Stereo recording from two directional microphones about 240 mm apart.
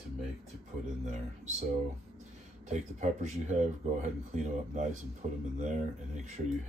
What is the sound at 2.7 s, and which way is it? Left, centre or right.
Speech, right.